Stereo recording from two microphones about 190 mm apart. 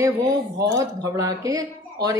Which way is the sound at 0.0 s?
15° right (ahead or behind).